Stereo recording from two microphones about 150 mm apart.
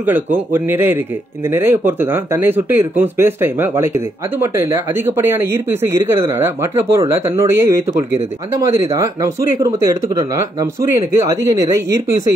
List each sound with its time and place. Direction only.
0.0 s speech: 10° right (ahead or behind)